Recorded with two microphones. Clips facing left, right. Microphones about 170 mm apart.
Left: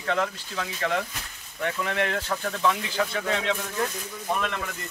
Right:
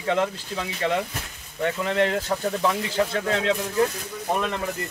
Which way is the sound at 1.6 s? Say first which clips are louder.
Right 4 dB; 30° right (ahead or behind).